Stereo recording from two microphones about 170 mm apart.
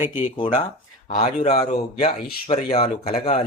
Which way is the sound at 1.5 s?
40° left (ahead or behind).